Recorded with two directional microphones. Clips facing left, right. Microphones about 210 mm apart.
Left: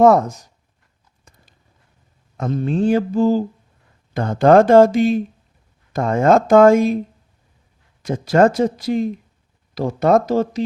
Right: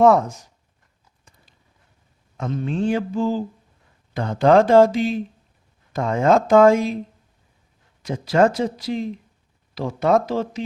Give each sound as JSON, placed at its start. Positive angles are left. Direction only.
{"t": 0.0, "sound": "mantra", "side_deg": 40}
{"t": 2.4, "sound": "mantra", "side_deg": 40}
{"t": 4.1, "sound": "speech", "side_deg": 45}
{"t": 8.0, "sound": "speech", "side_deg": 50}